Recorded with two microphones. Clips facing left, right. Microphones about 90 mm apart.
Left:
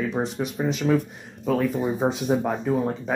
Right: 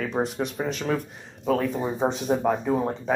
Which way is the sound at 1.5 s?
Centre (ahead or behind).